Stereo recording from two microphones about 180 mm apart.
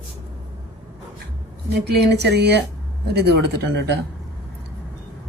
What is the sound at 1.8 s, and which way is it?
A woman's voice, 70° right (ahead or behind).